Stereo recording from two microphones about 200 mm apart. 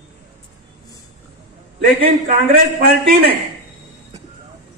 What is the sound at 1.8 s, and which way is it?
A man's voice, 45° right (ahead or behind).